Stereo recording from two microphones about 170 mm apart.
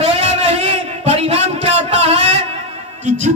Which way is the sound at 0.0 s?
40° right (ahead or behind).